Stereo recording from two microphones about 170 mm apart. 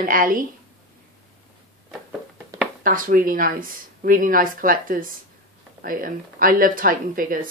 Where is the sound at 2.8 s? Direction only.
55° right (ahead or behind).